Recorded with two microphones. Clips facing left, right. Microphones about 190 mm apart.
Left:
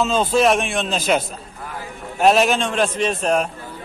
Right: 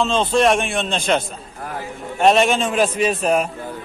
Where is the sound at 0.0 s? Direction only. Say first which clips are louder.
Even; 5° left (ahead or behind).